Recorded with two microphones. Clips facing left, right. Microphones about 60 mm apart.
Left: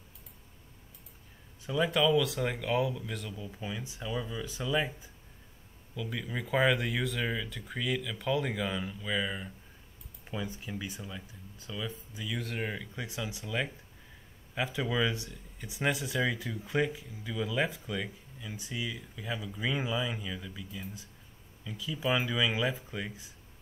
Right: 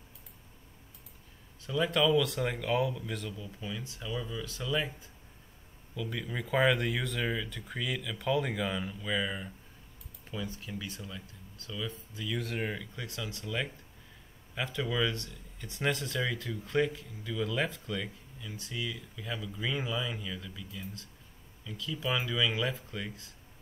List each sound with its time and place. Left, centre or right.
1.7 s speech: centre
3.3 s speech: centre
5.9 s speech: centre
10.2 s speech: centre
12.4 s speech: centre